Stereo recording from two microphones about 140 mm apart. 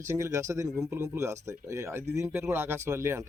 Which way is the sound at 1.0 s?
20° right (ahead or behind).